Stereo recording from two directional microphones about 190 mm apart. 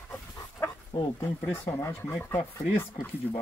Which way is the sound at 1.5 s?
15° left (ahead or behind).